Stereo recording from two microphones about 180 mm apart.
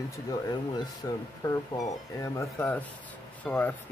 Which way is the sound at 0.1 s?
20° left (ahead or behind).